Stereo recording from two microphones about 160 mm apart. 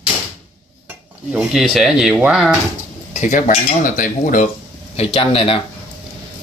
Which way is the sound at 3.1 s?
50° left (ahead or behind).